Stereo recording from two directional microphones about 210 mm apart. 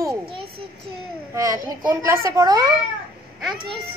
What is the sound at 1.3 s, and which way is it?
A child's voice, 15° right (ahead or behind).